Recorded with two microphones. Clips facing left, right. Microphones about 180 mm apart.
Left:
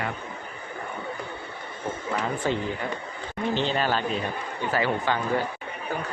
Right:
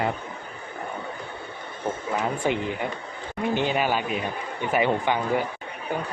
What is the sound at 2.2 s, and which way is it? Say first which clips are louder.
Speech: right 2 dB; 15° right (ahead or behind).